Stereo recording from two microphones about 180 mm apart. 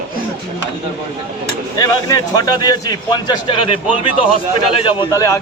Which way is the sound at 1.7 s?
20° left (ahead or behind).